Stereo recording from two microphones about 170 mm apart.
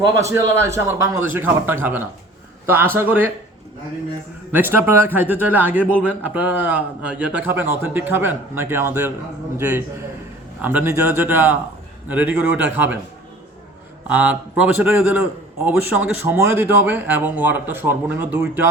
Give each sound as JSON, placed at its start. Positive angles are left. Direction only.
{"t": 0.2, "sound": "a man's voice", "side_deg": -15}
{"t": 4.5, "sound": "a man's voice", "side_deg": -15}
{"t": 14.1, "sound": "a man's voice", "side_deg": -10}